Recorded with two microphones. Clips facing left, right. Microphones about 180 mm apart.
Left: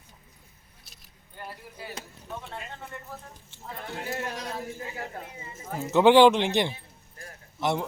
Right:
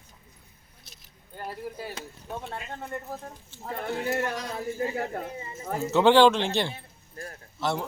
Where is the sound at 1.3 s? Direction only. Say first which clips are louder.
Right 6 dB; 40° right (ahead or behind).